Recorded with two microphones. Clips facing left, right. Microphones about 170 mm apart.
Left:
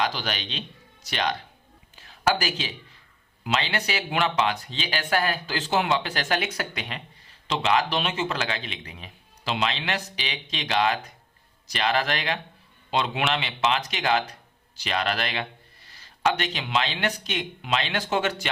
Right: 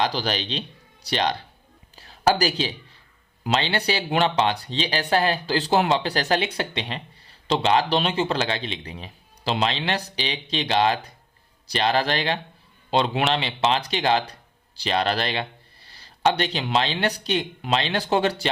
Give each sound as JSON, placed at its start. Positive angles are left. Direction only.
{"t": 0.0, "sound": "a woman's voice", "side_deg": -35}